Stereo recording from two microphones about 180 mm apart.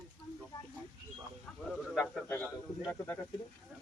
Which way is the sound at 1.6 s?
5° left (ahead or behind).